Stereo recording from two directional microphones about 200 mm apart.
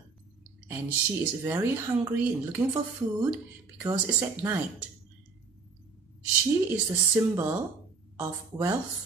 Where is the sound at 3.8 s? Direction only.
10° right (ahead or behind).